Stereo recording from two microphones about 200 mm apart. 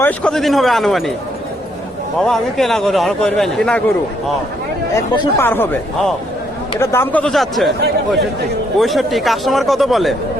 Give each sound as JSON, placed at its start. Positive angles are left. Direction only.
{"t": 0.0, "sound": "a man's voice", "side_deg": 5}
{"t": 2.1, "sound": "a man's voice", "side_deg": 0}
{"t": 4.9, "sound": "speech", "side_deg": 20}
{"t": 5.5, "sound": "a man's voice", "side_deg": 5}
{"t": 8.8, "sound": "a man's voice", "side_deg": 0}